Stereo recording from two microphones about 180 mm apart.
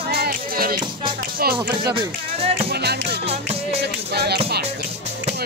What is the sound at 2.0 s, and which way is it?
Speech, 35° right (ahead or behind).